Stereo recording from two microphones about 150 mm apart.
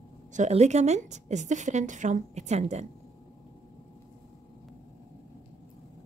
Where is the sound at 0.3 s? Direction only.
50° right (ahead or behind).